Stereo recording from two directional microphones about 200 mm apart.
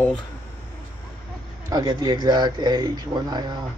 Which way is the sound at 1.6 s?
20° right (ahead or behind).